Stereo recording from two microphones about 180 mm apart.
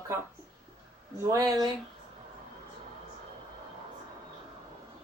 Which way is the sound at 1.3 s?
20° right (ahead or behind).